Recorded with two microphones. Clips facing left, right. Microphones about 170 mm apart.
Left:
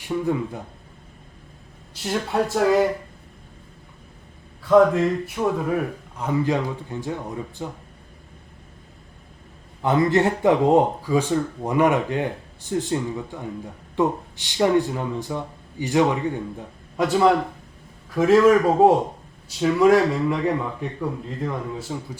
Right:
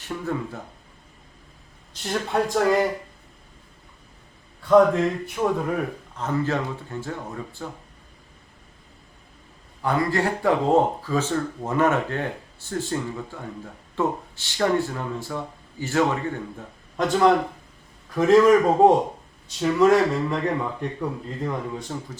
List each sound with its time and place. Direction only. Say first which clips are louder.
0.0 s speech: left 5 dB; 15° left (ahead or behind)
1.9 s a man's voice: left 1 dB; 5° left (ahead or behind)
4.6 s a man's voice: left 1 dB; centre (ahead or behind); by 7.7 s 15° left (ahead or behind)
9.8 s speech: left 4 dB; 20° left (ahead or behind)
18.1 s a man's voice: even; centre (ahead or behind)